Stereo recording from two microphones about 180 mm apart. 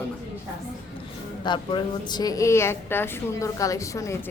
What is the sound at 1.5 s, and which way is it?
A woman's voice, 25° left (ahead or behind).